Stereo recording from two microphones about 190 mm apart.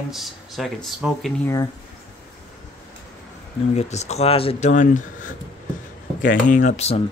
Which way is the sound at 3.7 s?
35° left (ahead or behind).